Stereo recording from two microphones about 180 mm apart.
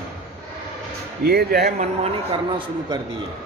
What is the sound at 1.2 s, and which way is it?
Speech, 60° right (ahead or behind).